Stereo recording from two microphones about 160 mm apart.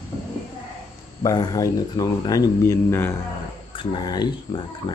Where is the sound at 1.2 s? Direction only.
25° left (ahead or behind).